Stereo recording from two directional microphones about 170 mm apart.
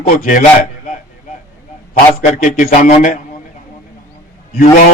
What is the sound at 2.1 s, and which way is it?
A man's voice, 45° left (ahead or behind).